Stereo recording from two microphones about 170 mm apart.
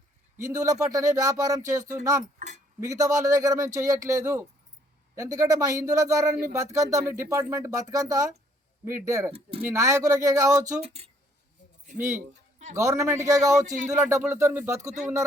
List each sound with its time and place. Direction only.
0.4 s speech: 20° right (ahead or behind)
2.4 s speech: 45° right (ahead or behind)
2.8 s speech: 20° right (ahead or behind)
10.8 s speech: 35° right (ahead or behind)
11.9 s speech: 15° right (ahead or behind)